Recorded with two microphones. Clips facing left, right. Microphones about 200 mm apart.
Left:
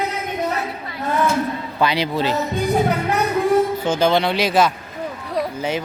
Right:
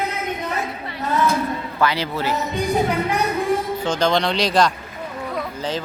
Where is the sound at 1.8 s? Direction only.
15° left (ahead or behind).